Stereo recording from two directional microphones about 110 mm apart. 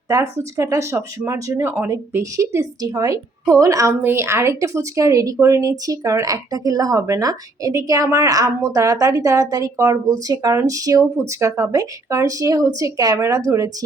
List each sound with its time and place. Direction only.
0.1 s speech: 30° right (ahead or behind)